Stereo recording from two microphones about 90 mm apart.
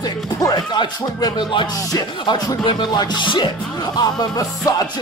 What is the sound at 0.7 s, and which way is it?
Music, 65° left (ahead or behind).